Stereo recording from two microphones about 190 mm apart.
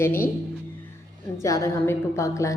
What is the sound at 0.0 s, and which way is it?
Speech, 10° left (ahead or behind).